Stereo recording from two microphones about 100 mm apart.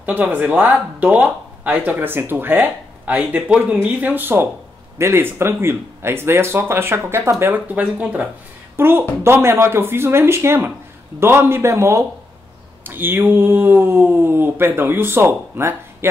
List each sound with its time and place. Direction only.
0.0 s a woman's voice: 20° right (ahead or behind)